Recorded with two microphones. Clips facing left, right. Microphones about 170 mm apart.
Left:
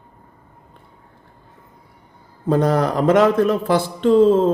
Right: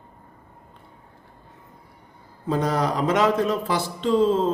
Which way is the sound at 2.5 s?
55° left (ahead or behind).